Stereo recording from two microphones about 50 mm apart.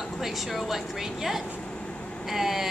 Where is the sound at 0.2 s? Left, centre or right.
Centre.